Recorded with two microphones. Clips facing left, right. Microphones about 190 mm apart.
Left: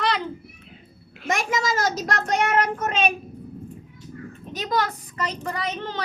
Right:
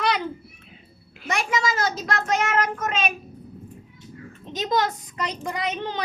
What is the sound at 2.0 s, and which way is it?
Child singing, 40° left (ahead or behind).